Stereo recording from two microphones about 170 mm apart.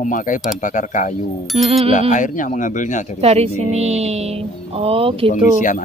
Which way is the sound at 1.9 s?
45° left (ahead or behind).